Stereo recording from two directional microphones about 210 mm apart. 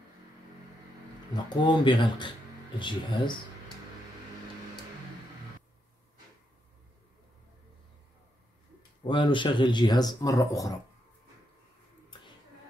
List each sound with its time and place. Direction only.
1.3 s speech: 20° left (ahead or behind)
9.0 s speech: 25° left (ahead or behind)